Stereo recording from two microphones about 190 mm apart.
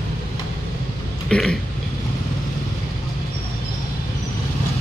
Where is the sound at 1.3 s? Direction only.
5° left (ahead or behind).